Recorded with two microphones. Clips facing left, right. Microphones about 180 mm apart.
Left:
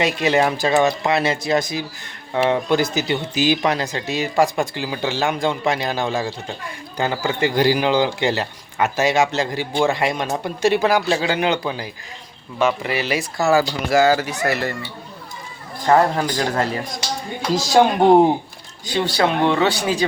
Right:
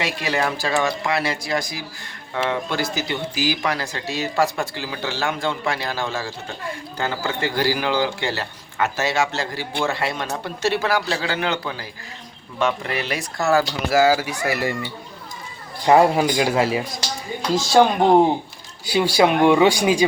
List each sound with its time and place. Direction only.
0.0 s speech: 20° left (ahead or behind)
12.5 s speech: 5° left (ahead or behind)
15.9 s speech: 10° right (ahead or behind)
18.9 s speech: 10° right (ahead or behind)